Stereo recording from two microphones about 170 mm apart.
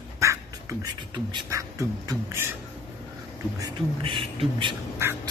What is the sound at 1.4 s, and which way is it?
Beatboxing, 20° right (ahead or behind).